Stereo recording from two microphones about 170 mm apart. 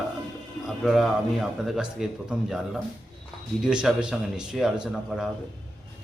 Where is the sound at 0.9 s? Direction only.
Centre (ahead or behind).